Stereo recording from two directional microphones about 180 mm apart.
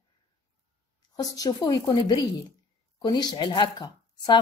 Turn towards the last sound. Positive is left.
turn(degrees=25)  # may be behind; listen again after turning